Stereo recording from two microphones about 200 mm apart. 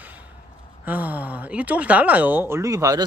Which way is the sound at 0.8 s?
10° right (ahead or behind).